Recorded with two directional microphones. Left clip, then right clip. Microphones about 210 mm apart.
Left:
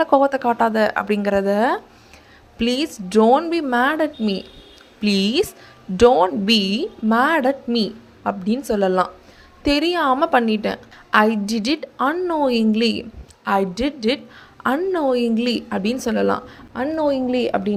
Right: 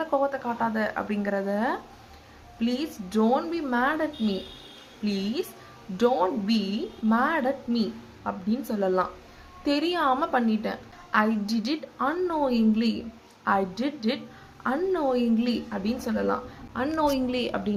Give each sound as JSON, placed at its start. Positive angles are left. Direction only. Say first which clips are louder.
{"t": 0.0, "sound": "a woman's voice", "louder": "left 10 dB", "side_deg": 45}
{"t": 16.7, "sound": "a woman's voice", "louder": "left 5 dB", "side_deg": 25}